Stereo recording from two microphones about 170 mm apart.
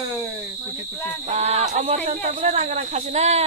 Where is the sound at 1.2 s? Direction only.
40° right (ahead or behind).